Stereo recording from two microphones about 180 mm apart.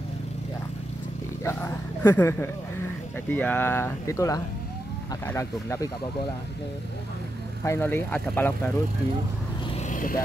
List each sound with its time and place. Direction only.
1.4 s speech: 15° left (ahead or behind)
7.6 s speech: 15° left (ahead or behind)
9.8 s vehicle: 45° left (ahead or behind)